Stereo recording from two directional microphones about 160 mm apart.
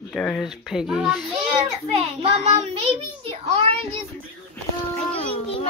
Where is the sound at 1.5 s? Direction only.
35° right (ahead or behind).